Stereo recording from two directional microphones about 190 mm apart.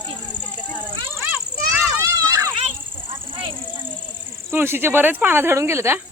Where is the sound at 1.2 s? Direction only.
10° right (ahead or behind).